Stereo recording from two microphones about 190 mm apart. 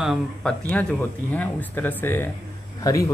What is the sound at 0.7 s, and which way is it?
Speech, 10° left (ahead or behind).